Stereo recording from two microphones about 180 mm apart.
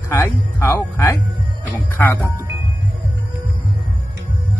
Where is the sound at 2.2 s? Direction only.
15° right (ahead or behind).